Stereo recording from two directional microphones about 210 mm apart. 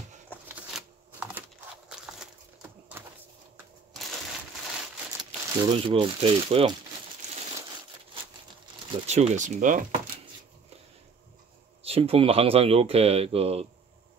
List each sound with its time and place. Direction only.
0.5 s shuffling cards: 5° right (ahead or behind)
1.9 s a sound: 5° right (ahead or behind)
5.2 s speech: 20° right (ahead or behind)
9.0 s speech: 30° right (ahead or behind)
11.8 s speech: 25° right (ahead or behind)